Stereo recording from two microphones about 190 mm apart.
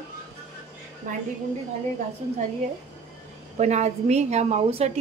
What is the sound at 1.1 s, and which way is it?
Speech, 45° right (ahead or behind).